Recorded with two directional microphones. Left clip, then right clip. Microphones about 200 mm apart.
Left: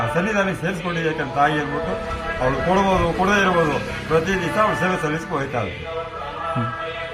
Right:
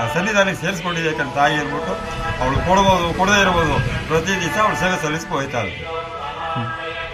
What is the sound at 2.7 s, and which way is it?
A man's voice, centre (ahead or behind).